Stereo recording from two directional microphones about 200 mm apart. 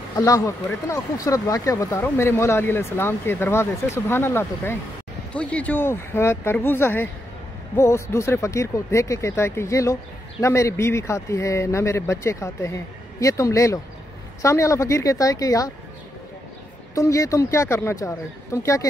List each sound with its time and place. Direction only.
0.1 s speech: 15° left (ahead or behind)
16.9 s speech: 15° left (ahead or behind)